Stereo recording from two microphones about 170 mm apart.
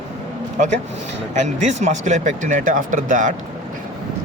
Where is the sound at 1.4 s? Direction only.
45° right (ahead or behind).